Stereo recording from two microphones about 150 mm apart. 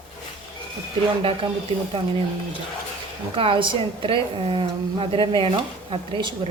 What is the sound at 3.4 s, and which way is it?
A woman's voice, 35° right (ahead or behind).